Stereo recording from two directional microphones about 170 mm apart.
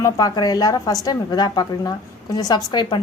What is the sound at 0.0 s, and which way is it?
A woman's voice, 25° left (ahead or behind).